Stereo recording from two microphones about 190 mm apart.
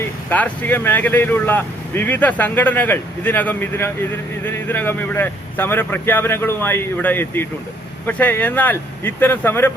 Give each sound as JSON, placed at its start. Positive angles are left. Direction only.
{"t": 0.3, "sound": "speech", "side_deg": 10}